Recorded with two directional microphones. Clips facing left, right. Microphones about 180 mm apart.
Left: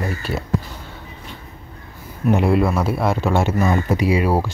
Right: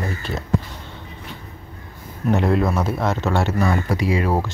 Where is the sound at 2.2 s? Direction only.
10° left (ahead or behind).